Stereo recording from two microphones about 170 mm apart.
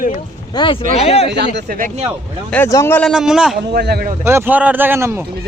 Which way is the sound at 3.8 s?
70° right (ahead or behind).